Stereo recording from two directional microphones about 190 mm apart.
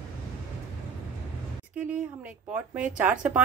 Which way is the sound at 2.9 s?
5° right (ahead or behind).